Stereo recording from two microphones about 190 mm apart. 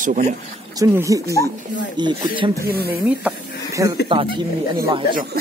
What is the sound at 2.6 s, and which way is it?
Speech, 55° right (ahead or behind).